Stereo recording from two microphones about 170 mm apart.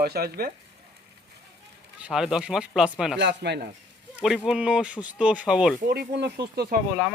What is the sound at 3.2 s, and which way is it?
Speech, 85° right.